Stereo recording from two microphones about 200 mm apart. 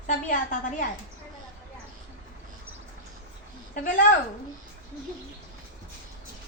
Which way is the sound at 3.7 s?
45° left (ahead or behind).